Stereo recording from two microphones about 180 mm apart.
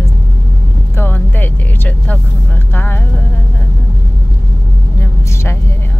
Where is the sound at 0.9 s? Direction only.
10° left (ahead or behind).